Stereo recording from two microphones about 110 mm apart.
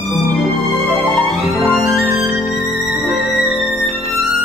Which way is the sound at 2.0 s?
25° right (ahead or behind).